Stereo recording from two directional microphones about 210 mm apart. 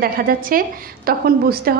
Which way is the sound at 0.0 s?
45° right (ahead or behind).